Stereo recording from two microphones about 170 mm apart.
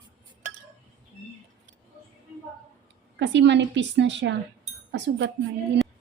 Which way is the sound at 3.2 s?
90° right.